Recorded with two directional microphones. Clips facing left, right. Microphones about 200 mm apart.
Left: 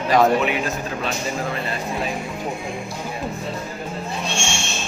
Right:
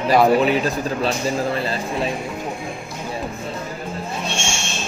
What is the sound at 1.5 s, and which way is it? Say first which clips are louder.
Speech: right 3 dB; 30° right (ahead or behind).